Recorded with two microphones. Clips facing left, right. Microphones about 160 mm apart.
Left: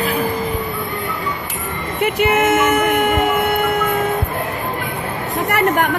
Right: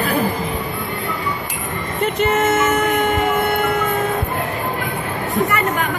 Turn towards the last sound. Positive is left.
turn(degrees=65)  # may be behind; listen again after turning